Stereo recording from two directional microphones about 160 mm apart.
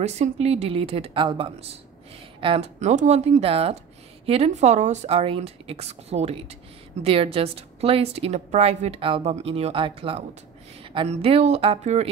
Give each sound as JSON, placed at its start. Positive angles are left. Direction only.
{"t": 0.0, "sound": "a woman's voice", "side_deg": -40}